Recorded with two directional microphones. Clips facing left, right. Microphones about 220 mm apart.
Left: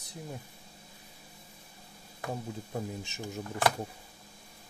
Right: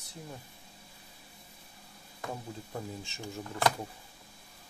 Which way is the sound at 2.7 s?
20° left (ahead or behind).